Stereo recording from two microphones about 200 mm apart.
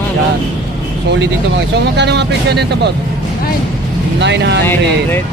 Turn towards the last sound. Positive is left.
turn(degrees=-60)  # may be behind; listen again after turning